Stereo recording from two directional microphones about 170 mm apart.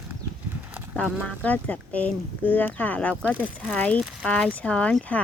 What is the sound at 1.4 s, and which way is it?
Speech, 10° left (ahead or behind).